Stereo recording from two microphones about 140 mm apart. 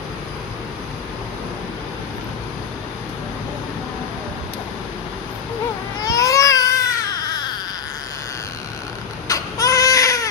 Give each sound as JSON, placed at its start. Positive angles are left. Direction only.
{"t": 6.0, "sound": "baby cry", "side_deg": 25}
{"t": 9.3, "sound": "baby cry", "side_deg": 25}